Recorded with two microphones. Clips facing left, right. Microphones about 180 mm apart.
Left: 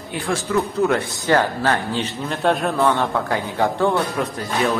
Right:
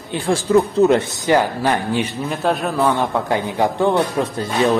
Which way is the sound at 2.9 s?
15° right (ahead or behind).